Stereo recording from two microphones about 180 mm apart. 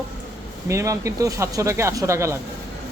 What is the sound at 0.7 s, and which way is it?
Speech, 15° right (ahead or behind).